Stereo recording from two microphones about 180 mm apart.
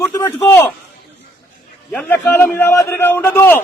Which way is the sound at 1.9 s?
10° left (ahead or behind).